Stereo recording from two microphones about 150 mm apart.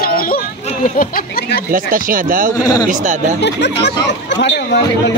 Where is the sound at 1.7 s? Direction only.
70° right (ahead or behind).